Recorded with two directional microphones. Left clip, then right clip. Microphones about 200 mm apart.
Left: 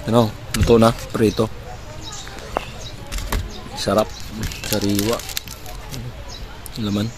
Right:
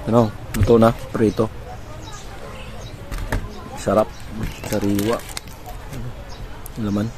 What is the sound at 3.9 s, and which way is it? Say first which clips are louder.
Speech: right 1 dB; 10° left (ahead or behind).